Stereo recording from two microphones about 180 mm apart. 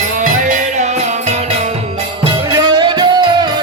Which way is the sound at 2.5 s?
25° right (ahead or behind).